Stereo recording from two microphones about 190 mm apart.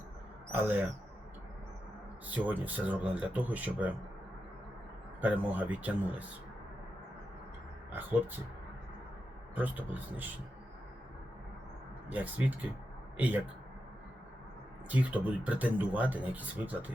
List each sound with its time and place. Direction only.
0.5 s speech: 10° right (ahead or behind)
2.2 s speech: 10° right (ahead or behind)
5.2 s speech: 10° right (ahead or behind)
7.9 s speech: 10° right (ahead or behind)
9.6 s speech: 10° right (ahead or behind)
12.0 s a man's voice: 10° right (ahead or behind)
14.8 s speech: 10° right (ahead or behind)